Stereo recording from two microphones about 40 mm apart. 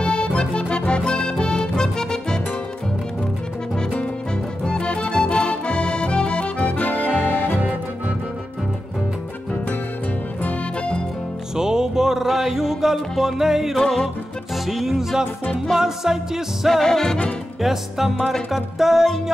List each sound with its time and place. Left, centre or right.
0.0 s accordion: left
4.6 s accordion: left
7.0 s music: right
11.5 s music: centre
13.4 s music: centre
13.7 s music: centre
14.7 s music: centre
16.8 s music: centre
17.6 s music: centre